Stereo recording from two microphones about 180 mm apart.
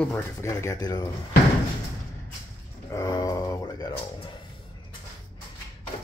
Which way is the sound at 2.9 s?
20° left (ahead or behind).